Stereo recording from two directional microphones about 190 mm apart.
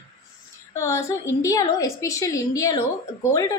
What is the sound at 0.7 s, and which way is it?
A woman's voice, 15° left (ahead or behind).